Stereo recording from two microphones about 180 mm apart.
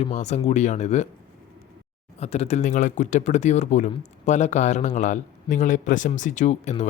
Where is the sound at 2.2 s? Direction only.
35° left (ahead or behind).